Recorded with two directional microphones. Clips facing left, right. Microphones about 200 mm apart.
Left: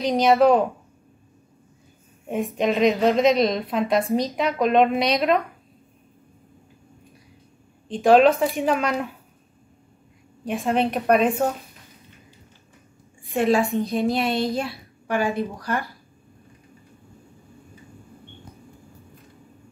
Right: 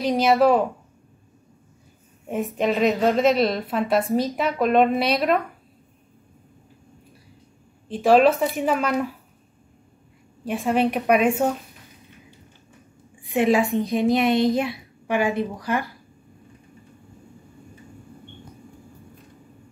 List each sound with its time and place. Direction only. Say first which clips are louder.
0.0 s a woman's voice: left 1 dB; centre (ahead or behind)
2.2 s a woman's voice: even; 5° right (ahead or behind)
7.9 s a woman's voice: left 1 dB; 5° right (ahead or behind)
10.4 s a child's voice: right 1 dB; 10° right (ahead or behind)
13.2 s a child's voice: right 1 dB; 15° right (ahead or behind)